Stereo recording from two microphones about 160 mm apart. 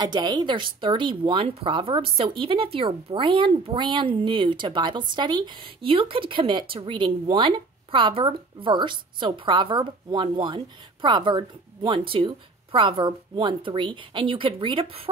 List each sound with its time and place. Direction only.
0.0 s speech: 25° right (ahead or behind)